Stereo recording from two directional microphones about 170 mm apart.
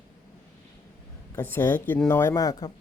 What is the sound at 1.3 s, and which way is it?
Speech, 15° left (ahead or behind).